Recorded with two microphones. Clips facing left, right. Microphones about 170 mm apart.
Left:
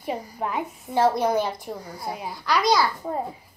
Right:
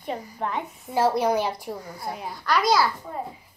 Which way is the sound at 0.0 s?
5° left (ahead or behind).